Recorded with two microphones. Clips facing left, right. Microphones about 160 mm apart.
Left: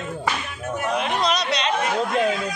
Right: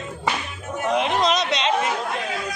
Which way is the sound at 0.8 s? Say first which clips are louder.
Right 3 dB; 20° right (ahead or behind).